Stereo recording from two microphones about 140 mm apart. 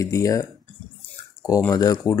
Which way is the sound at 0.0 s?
25° left (ahead or behind).